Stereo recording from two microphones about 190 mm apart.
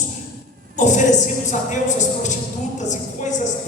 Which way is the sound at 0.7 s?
40° left (ahead or behind).